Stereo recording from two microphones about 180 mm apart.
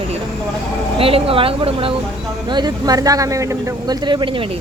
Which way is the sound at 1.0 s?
30° right (ahead or behind).